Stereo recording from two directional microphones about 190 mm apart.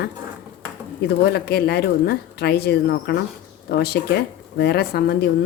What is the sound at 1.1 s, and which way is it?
Speech, 60° left (ahead or behind).